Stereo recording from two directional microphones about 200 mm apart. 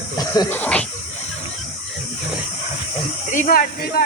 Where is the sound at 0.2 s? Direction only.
15° left (ahead or behind).